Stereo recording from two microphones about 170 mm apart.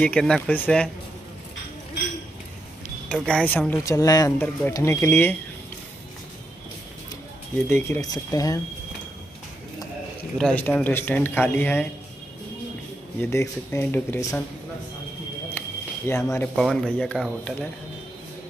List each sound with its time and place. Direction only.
0.0 s speech: 5° left (ahead or behind)
3.1 s speech: 5° left (ahead or behind)
7.7 s speech: 15° left (ahead or behind)
10.3 s speech: 5° left (ahead or behind)
13.2 s speech: 15° left (ahead or behind)
15.6 s a sound: 10° left (ahead or behind)
16.1 s speech: 15° left (ahead or behind)
16.5 s speech: centre (ahead or behind)